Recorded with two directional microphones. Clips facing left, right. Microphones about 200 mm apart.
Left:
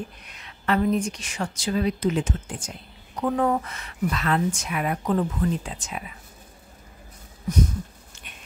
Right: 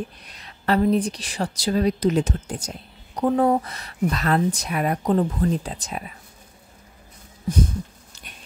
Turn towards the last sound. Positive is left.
turn(degrees=-30)  # may be behind; listen again after turning